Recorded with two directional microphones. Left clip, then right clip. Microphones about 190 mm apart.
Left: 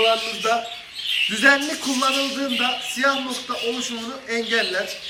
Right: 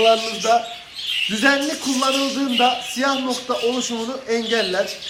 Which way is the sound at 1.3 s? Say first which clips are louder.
Left 1 dB; 15° right (ahead or behind).